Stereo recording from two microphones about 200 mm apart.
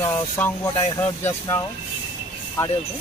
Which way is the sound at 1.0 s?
10° left (ahead or behind).